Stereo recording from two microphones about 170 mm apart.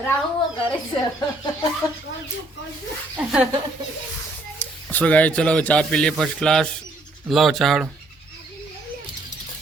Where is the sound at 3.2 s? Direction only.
5° right (ahead or behind).